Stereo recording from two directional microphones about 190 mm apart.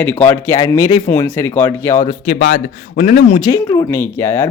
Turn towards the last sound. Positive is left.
turn(degrees=10)  # may be behind; listen again after turning